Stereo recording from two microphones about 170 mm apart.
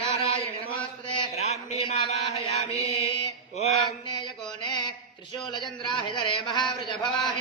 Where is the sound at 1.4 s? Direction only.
40° left (ahead or behind).